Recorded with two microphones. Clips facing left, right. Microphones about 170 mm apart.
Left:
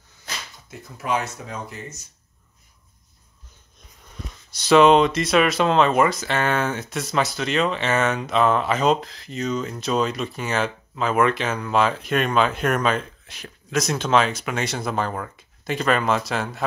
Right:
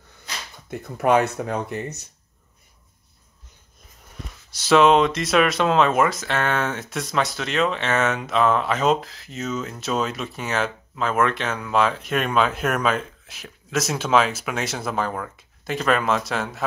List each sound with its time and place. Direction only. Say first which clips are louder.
0.7 s speech: right 7 dB; 60° right (ahead or behind)
4.5 s speech: left 2 dB; centre (ahead or behind)